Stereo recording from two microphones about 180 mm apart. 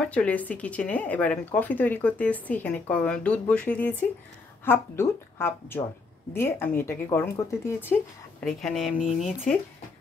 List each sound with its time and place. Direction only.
0.1 s speech: 10° left (ahead or behind)
8.5 s speech: centre (ahead or behind)
8.9 s speech: 45° left (ahead or behind)